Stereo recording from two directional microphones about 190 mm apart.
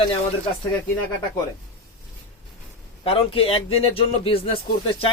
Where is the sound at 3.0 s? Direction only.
30° left (ahead or behind).